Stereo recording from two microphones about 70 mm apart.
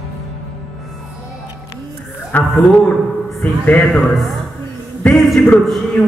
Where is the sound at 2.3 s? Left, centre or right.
Left.